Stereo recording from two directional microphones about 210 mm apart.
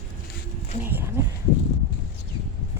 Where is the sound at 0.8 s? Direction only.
10° right (ahead or behind).